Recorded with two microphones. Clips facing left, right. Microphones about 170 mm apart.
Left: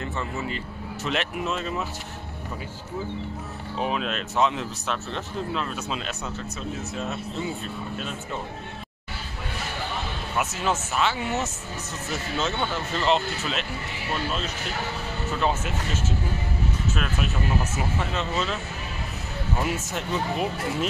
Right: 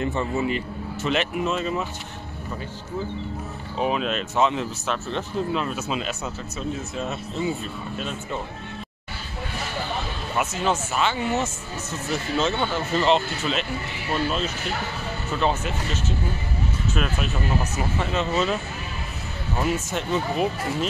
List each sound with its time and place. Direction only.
0.0 s a man's voice: 20° right (ahead or behind)
1.0 s speech: centre (ahead or behind)
3.7 s speech: centre (ahead or behind)
10.3 s speech: centre (ahead or behind)
15.4 s speech: 5° left (ahead or behind)
19.6 s speech: centre (ahead or behind)